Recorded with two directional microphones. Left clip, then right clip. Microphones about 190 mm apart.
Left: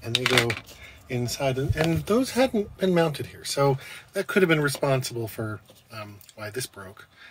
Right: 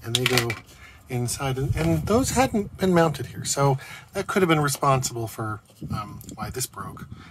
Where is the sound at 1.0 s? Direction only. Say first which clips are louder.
Left 2 dB; 20° right (ahead or behind).